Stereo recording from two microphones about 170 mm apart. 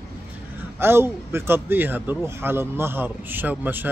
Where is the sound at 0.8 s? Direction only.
15° right (ahead or behind).